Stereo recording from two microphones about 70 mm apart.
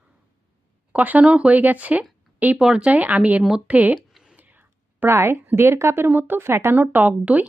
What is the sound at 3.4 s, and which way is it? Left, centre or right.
Speech, centre.